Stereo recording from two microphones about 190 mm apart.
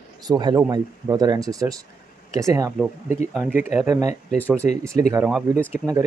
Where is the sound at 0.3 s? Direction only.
20° right (ahead or behind).